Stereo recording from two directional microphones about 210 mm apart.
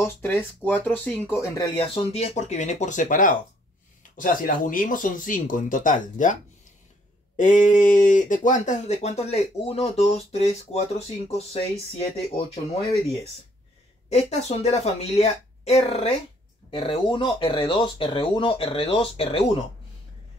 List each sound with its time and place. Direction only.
0.0 s speech: 10° left (ahead or behind)
1.8 s speech: 30° left (ahead or behind)
7.3 s speech: 35° left (ahead or behind)
14.0 s speech: 30° left (ahead or behind)